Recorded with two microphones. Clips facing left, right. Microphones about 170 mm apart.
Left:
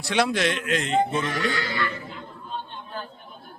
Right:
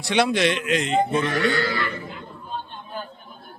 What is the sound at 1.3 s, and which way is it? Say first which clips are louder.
Speech: right 5 dB; 65° right (ahead or behind).